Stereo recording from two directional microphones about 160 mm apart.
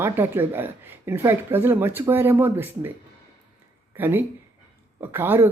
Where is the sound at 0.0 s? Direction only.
15° right (ahead or behind).